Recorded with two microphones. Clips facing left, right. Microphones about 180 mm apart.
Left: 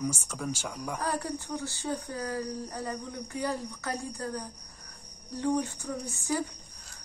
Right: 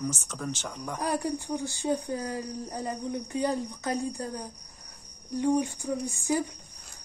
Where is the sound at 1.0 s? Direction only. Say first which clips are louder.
Right 5 dB; 15° right (ahead or behind).